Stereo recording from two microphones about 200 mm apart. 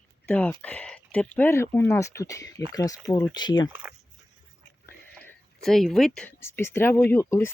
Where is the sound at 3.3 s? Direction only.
20° left (ahead or behind).